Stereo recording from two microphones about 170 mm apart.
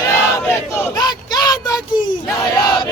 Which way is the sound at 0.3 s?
15° left (ahead or behind).